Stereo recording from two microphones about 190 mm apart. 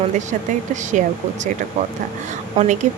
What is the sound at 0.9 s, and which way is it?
Speech, 40° right (ahead or behind).